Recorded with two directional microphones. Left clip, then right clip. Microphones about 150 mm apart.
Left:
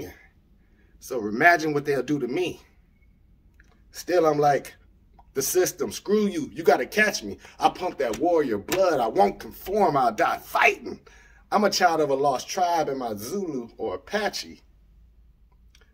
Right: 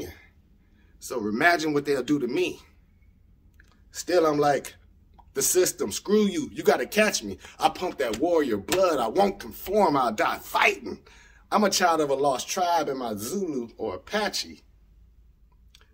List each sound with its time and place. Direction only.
0.9 s speech: 20° right (ahead or behind)
3.9 s speech: 25° right (ahead or behind)